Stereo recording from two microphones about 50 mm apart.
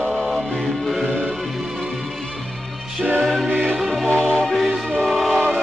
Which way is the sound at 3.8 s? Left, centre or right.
Centre.